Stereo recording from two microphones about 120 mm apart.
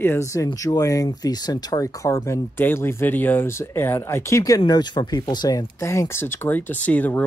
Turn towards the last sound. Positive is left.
turn(degrees=15)  # may be behind; listen again after turning